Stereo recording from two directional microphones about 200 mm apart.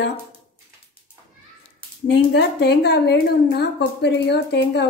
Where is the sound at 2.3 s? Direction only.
55° left (ahead or behind).